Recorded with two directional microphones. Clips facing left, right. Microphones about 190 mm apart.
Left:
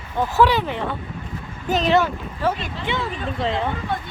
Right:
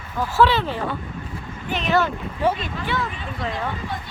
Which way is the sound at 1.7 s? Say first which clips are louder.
Left 5 dB; 40° left (ahead or behind).